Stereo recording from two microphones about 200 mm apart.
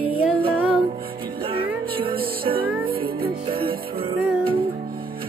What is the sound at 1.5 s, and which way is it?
Music, 25° right (ahead or behind).